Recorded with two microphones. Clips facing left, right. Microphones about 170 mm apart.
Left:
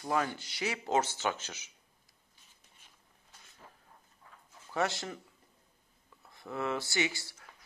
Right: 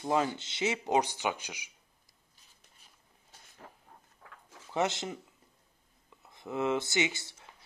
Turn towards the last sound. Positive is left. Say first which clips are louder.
# right 1 dB
turn(degrees=-20)  # may be behind; listen again after turning